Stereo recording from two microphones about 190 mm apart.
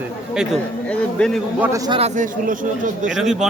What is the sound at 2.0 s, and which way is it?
Speech, 45° right (ahead or behind).